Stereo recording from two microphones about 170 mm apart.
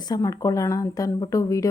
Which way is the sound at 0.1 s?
20° left (ahead or behind).